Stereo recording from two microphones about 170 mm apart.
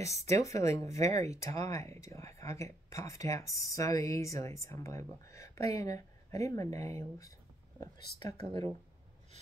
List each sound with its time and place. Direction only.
0.4 s speech: 20° left (ahead or behind)
8.4 s speech: 30° right (ahead or behind)